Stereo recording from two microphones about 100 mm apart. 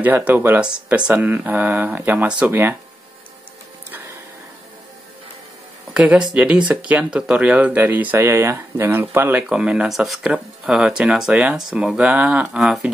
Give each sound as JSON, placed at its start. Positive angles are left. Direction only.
{"t": 0.0, "sound": "speech", "side_deg": -15}
{"t": 5.9, "sound": "speech", "side_deg": -10}
{"t": 9.5, "sound": "speech", "side_deg": -10}